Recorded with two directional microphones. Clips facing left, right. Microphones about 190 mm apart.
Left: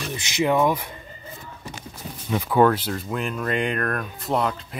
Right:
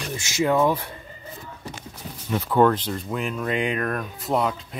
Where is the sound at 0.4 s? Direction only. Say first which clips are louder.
Even; 15° left (ahead or behind).